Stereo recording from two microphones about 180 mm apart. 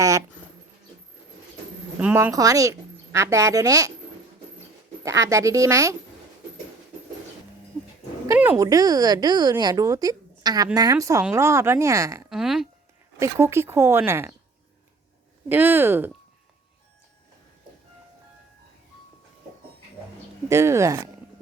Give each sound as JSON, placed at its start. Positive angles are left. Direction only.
{"t": 0.0, "sound": "a sound", "side_deg": -20}
{"t": 2.0, "sound": "speech", "side_deg": -10}
{"t": 5.0, "sound": "a woman's voice", "side_deg": -15}
{"t": 8.3, "sound": "a woman's voice", "side_deg": -15}
{"t": 12.3, "sound": "speech", "side_deg": -5}
{"t": 13.1, "sound": "a woman's voice", "side_deg": -15}
{"t": 15.4, "sound": "a woman's voice", "side_deg": -10}
{"t": 20.5, "sound": "a woman's voice", "side_deg": -15}